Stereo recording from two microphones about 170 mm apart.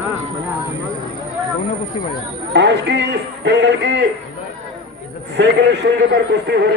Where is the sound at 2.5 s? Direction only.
90° right.